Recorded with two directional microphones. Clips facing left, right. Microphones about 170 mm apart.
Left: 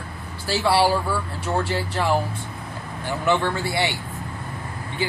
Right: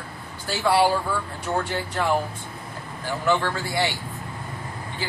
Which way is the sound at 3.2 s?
20° left (ahead or behind).